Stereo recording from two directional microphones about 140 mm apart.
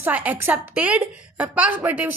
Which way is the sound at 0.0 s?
10° right (ahead or behind).